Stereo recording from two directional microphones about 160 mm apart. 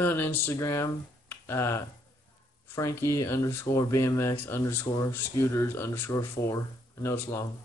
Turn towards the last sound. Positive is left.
turn(degrees=15)  # may be behind; listen again after turning